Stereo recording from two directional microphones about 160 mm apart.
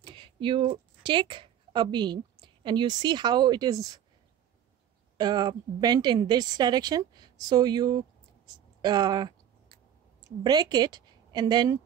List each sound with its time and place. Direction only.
0.1 s a woman's voice: 30° right (ahead or behind)
5.1 s a woman's voice: 25° right (ahead or behind)
10.4 s a woman's voice: 25° right (ahead or behind)